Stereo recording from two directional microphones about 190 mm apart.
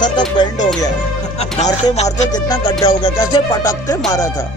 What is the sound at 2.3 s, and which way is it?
Music, 20° left (ahead or behind).